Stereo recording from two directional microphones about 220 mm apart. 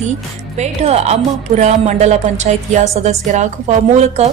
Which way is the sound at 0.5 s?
30° right (ahead or behind).